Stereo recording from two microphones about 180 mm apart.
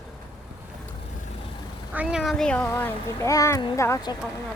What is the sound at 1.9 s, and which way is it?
A child's voice, 5° right (ahead or behind).